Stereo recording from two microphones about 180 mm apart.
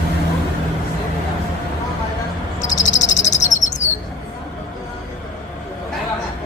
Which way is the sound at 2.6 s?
40° left (ahead or behind).